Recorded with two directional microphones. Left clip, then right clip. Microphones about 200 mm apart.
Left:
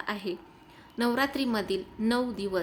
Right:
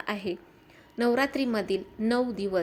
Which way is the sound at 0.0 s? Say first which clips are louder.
Right 1 dB; 15° right (ahead or behind).